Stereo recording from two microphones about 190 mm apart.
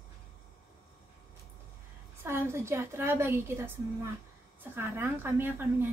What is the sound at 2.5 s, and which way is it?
Speech, 15° right (ahead or behind).